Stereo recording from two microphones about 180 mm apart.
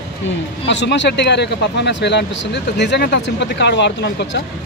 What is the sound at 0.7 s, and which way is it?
Speech, 80° left.